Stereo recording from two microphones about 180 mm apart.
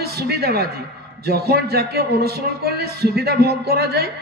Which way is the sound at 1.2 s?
60° right (ahead or behind).